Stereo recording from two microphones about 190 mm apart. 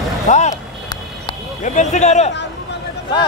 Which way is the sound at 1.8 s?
40° left (ahead or behind).